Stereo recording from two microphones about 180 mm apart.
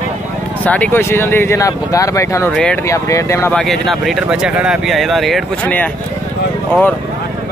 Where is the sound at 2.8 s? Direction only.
15° left (ahead or behind).